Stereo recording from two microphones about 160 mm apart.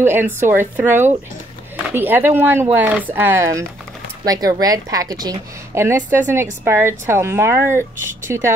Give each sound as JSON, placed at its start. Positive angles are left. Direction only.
{"t": 0.0, "sound": "a woman's voice", "side_deg": -15}